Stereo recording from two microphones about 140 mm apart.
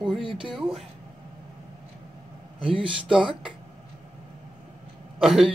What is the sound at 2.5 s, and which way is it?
Speech, 35° right (ahead or behind).